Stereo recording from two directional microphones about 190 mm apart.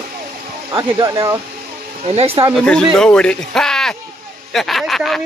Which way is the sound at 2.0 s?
30° right (ahead or behind).